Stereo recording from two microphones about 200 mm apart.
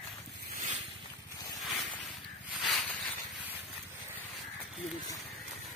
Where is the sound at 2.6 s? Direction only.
Centre (ahead or behind).